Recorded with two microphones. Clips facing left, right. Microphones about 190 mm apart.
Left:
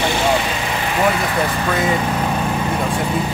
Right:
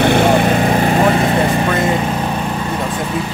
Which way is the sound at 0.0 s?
55° right (ahead or behind).